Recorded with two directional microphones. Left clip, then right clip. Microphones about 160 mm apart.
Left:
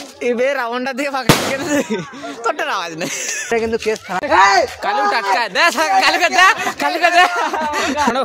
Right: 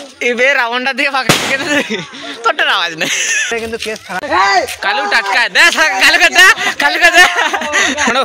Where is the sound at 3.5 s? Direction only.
55° left (ahead or behind).